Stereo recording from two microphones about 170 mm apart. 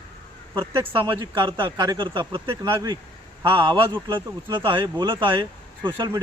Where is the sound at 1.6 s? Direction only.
25° right (ahead or behind).